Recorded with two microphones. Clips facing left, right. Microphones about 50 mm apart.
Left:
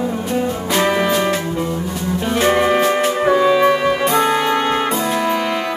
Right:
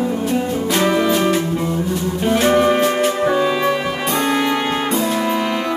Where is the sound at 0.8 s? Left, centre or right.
Centre.